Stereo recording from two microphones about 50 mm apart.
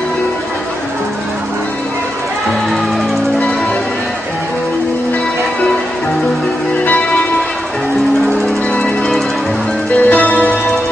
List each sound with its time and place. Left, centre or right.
6.8 s music: left
8.4 s music: centre
9.9 s music: left